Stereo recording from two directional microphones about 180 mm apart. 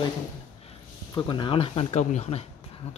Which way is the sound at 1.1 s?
25° left (ahead or behind).